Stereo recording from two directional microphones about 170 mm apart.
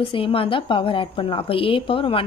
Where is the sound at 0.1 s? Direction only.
30° left (ahead or behind).